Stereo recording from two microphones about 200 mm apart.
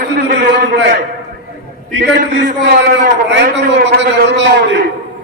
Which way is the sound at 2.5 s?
55° right (ahead or behind).